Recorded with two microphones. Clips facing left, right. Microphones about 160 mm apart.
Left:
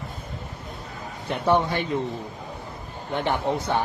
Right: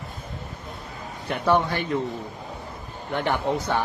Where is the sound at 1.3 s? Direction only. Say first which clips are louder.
Even; 20° left (ahead or behind).